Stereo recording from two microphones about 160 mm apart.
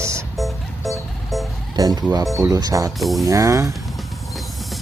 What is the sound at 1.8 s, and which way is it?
Speech, 25° right (ahead or behind).